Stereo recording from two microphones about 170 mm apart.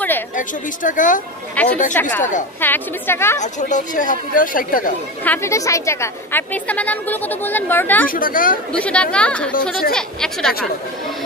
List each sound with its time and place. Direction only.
0.4 s speech: 50° left (ahead or behind)
1.6 s a woman's voice: 10° left (ahead or behind)
3.3 s speech: 45° left (ahead or behind)
5.2 s a woman's voice: 15° left (ahead or behind)
8.1 s speech: 55° left (ahead or behind)
8.7 s a woman's voice: 5° left (ahead or behind)